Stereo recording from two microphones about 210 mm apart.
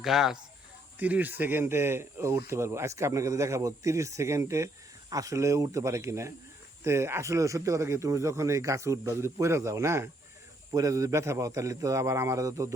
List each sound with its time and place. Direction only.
0.0 s speech: centre (ahead or behind)